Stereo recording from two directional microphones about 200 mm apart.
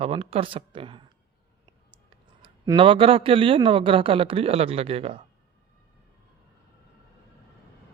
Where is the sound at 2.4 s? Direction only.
20° right (ahead or behind).